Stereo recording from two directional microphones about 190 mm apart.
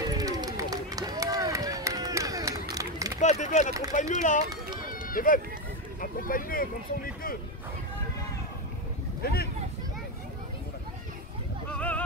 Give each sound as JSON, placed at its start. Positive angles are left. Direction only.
{"t": 0.1, "sound": "run", "side_deg": -20}
{"t": 3.2, "sound": "speech", "side_deg": 40}
{"t": 4.8, "sound": "run", "side_deg": 45}
{"t": 5.9, "sound": "speech", "side_deg": 45}
{"t": 9.2, "sound": "speech", "side_deg": 55}
{"t": 11.7, "sound": "a sound", "side_deg": 5}